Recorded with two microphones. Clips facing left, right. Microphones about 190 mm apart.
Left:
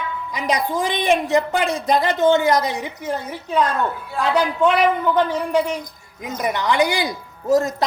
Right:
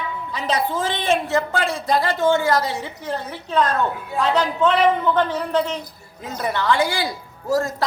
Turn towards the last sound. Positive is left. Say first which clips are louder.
# left 3 dB
turn(degrees=20)  # may be behind; listen again after turning